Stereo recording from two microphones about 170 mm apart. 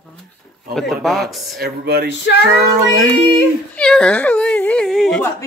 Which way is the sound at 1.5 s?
70° right (ahead or behind).